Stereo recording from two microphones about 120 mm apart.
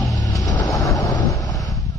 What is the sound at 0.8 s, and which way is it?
Vehicle, 30° left (ahead or behind).